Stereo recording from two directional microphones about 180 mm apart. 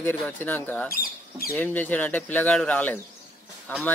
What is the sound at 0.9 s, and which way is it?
Speech, 55° left (ahead or behind).